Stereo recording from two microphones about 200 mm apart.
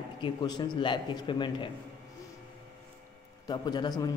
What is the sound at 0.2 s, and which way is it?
A man's voice, 20° left (ahead or behind).